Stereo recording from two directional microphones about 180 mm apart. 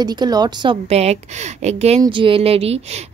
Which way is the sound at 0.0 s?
25° right (ahead or behind).